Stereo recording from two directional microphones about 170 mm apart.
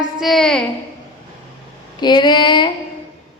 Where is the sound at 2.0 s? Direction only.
25° left (ahead or behind).